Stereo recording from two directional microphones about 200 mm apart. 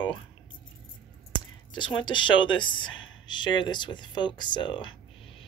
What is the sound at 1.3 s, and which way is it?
Speech, 20° left (ahead or behind).